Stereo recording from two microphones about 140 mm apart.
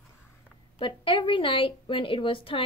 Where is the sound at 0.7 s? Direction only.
35° left (ahead or behind).